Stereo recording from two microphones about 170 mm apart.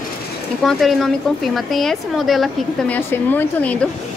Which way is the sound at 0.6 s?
Centre (ahead or behind).